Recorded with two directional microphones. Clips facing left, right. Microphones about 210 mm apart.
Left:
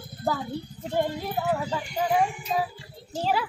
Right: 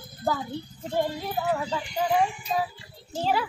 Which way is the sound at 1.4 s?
5° left (ahead or behind).